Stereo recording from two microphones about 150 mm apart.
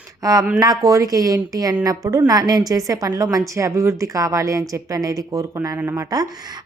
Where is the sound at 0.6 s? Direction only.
25° right (ahead or behind).